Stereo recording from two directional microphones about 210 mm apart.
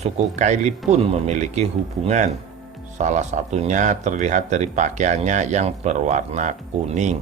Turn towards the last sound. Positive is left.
turn(degrees=-35)  # may be behind; listen again after turning